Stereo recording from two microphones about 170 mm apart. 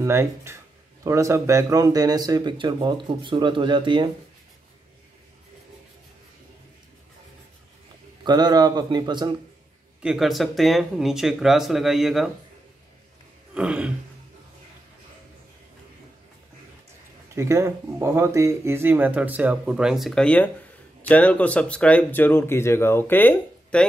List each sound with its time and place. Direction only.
0.0 s speech: 15° right (ahead or behind)
8.2 s speech: 25° right (ahead or behind)
10.0 s speech: centre (ahead or behind)
13.6 s speech: 5° right (ahead or behind)
17.4 s speech: 15° right (ahead or behind); by 23.9 s 10° left (ahead or behind)